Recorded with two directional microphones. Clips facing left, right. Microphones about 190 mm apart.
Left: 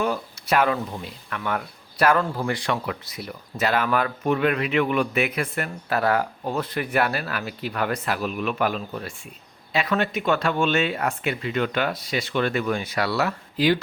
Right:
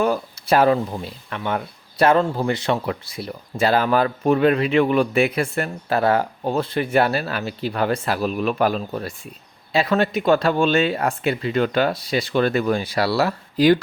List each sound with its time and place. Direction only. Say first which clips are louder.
0.0 s speech: right 5 dB; 35° right (ahead or behind)